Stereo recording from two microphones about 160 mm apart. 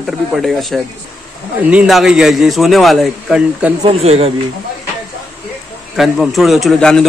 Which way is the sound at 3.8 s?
40° right (ahead or behind).